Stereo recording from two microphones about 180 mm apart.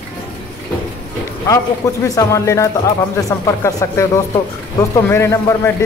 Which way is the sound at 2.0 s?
20° left (ahead or behind).